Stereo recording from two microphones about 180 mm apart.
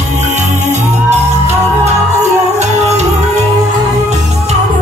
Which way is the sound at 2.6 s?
40° right (ahead or behind).